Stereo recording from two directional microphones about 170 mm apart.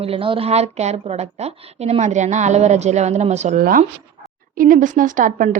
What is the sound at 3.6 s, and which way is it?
A woman's voice, 55° right (ahead or behind).